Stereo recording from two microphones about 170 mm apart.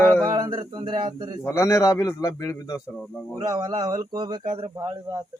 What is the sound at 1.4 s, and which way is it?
A man's voice, 15° left (ahead or behind).